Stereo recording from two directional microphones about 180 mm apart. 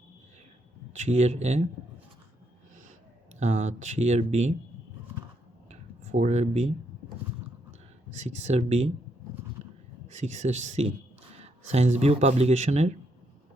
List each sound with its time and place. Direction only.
0.9 s speech: 40° right (ahead or behind)
3.4 s speech: 40° right (ahead or behind)
6.1 s speech: 40° right (ahead or behind)
8.1 s speech: 40° right (ahead or behind)
9.6 s a sound: 40° right (ahead or behind)
10.1 s speech: 40° right (ahead or behind)